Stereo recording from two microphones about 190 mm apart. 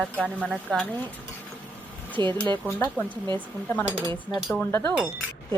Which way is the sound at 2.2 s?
25° right (ahead or behind).